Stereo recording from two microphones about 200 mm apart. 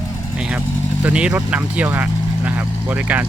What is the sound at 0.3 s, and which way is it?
Vehicle, 5° right (ahead or behind).